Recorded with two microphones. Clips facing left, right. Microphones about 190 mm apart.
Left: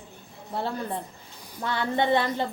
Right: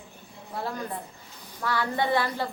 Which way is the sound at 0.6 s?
30° left (ahead or behind).